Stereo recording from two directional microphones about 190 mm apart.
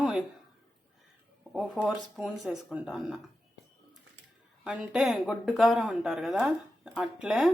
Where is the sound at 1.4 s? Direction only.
Centre (ahead or behind).